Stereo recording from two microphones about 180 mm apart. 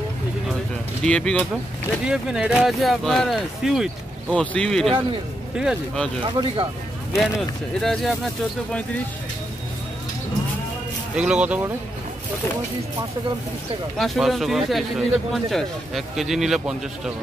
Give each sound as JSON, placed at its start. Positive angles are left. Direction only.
{"t": 1.0, "sound": "speech", "side_deg": 5}
{"t": 2.0, "sound": "speech", "side_deg": -5}
{"t": 6.2, "sound": "speech", "side_deg": -30}
{"t": 7.2, "sound": "speech", "side_deg": 0}
{"t": 11.1, "sound": "speech", "side_deg": -5}
{"t": 13.9, "sound": "speech", "side_deg": 0}